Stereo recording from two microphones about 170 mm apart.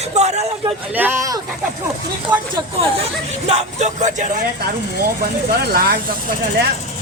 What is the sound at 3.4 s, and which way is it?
Speech, 40° right (ahead or behind).